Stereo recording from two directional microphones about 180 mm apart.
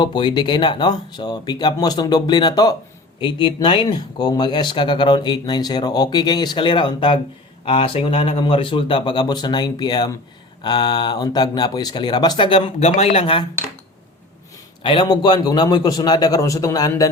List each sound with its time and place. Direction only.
0.0 s speech: 25° left (ahead or behind)
14.8 s speech: 25° left (ahead or behind)